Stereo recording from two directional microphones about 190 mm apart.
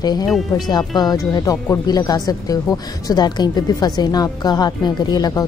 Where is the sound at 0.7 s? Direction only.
20° left (ahead or behind).